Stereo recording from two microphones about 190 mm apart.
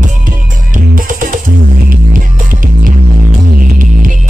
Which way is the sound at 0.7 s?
45° right (ahead or behind).